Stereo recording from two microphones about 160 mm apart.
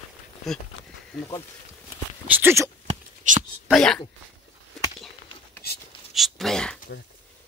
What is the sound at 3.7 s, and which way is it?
Speech, 5° left (ahead or behind).